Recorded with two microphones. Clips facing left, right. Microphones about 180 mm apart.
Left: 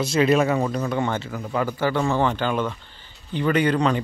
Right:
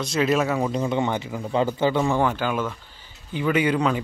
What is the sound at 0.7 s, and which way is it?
Speech, 20° right (ahead or behind).